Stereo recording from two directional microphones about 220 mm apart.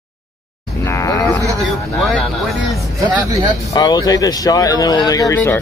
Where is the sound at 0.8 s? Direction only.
15° left (ahead or behind).